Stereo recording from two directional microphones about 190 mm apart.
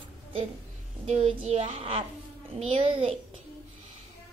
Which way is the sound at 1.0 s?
30° right (ahead or behind).